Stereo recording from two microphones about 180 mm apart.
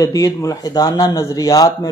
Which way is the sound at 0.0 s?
20° left (ahead or behind).